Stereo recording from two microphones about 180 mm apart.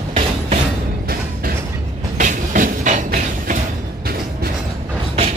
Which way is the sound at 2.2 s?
45° right (ahead or behind).